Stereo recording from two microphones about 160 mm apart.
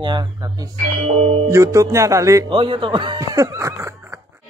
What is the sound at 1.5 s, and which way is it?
Speech, 20° right (ahead or behind).